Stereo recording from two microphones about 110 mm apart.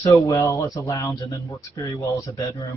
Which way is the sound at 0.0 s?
30° left (ahead or behind).